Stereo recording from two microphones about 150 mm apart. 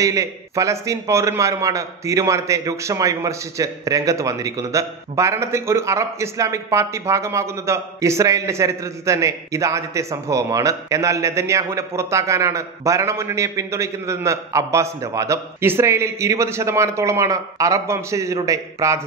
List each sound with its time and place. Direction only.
0.0 s a man's voice: 20° right (ahead or behind)